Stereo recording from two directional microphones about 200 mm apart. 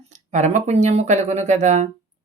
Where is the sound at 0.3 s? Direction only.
35° right (ahead or behind).